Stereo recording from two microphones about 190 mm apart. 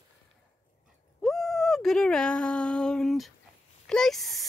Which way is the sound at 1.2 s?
Centre (ahead or behind).